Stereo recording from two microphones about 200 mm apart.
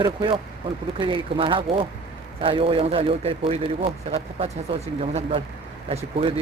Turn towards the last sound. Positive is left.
turn(degrees=-30)  # may be behind; listen again after turning